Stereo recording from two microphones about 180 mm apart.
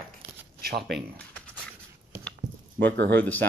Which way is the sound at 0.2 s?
65° right (ahead or behind).